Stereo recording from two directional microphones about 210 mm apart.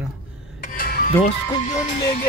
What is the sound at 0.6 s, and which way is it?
Speech, 40° left (ahead or behind).